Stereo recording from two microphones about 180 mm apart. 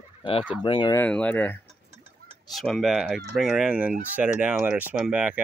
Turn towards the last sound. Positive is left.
turn(degrees=-5)  # may be behind; listen again after turning